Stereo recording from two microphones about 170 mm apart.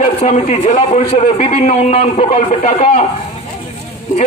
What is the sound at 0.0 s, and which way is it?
A man's voice, 45° left (ahead or behind).